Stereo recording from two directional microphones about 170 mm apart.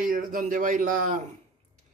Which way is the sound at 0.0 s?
55° right (ahead or behind).